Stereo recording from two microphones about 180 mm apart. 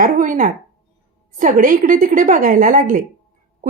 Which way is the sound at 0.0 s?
50° right (ahead or behind).